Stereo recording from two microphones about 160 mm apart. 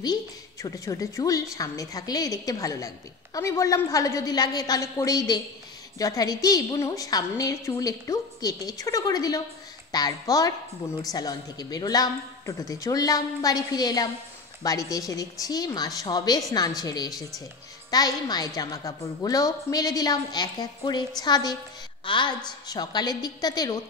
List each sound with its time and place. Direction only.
0.0 s a woman's voice: 25° left (ahead or behind)